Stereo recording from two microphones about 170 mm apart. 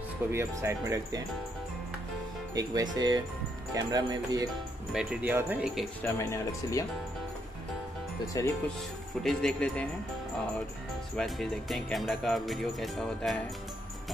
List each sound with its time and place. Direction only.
0.3 s speech: 15° right (ahead or behind)
2.5 s speech: 20° right (ahead or behind)
4.9 s speech: 5° right (ahead or behind)
6.1 s speech: 20° left (ahead or behind)
8.4 s speech: 20° left (ahead or behind)
9.2 s speech: 5° left (ahead or behind)
11.1 s speech: centre (ahead or behind)